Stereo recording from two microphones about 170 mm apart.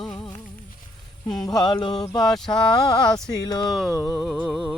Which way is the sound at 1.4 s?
25° left (ahead or behind).